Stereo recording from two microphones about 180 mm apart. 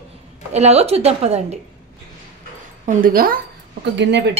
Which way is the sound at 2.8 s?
50° right (ahead or behind).